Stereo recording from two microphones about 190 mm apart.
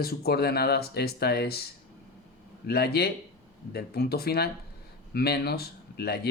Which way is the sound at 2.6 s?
55° left (ahead or behind).